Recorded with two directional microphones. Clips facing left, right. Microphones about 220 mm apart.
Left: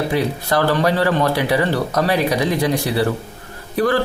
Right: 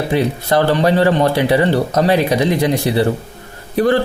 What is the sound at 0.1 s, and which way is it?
Speech, 25° right (ahead or behind).